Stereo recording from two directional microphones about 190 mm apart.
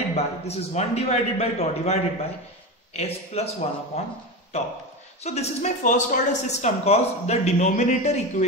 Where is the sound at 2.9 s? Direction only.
35° left (ahead or behind).